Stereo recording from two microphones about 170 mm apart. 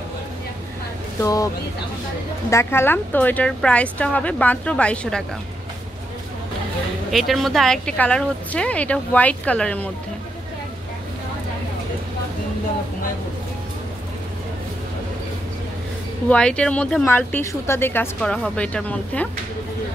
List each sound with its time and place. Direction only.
1.2 s speech: 20° left (ahead or behind)
2.5 s speech: 15° left (ahead or behind)
7.1 s a woman's voice: centre (ahead or behind)
16.3 s a woman's voice: 5° left (ahead or behind)